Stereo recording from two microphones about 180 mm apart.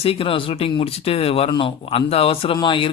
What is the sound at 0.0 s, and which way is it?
Speech, 30° left (ahead or behind).